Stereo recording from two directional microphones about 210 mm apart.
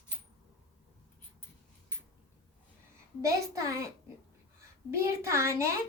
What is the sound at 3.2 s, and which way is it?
A woman's voice, 15° right (ahead or behind).